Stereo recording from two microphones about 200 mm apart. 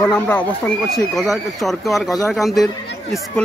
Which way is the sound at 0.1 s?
5° left (ahead or behind).